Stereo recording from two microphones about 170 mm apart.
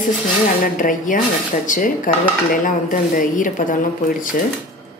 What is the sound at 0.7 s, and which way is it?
A woman's voice, 50° left (ahead or behind).